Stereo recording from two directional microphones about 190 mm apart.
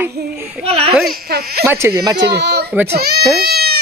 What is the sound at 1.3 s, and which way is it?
Speech, 55° right (ahead or behind).